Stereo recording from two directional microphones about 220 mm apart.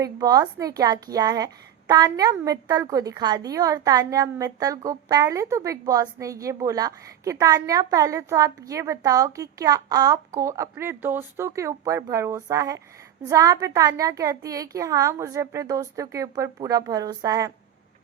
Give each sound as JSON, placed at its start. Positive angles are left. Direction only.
{"t": 0.0, "sound": "a woman's voice", "side_deg": -15}